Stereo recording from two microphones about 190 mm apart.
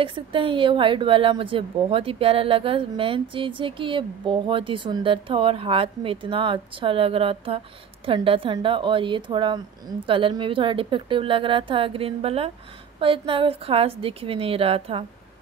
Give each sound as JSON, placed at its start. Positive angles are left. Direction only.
{"t": 0.0, "sound": "a woman's voice", "side_deg": -25}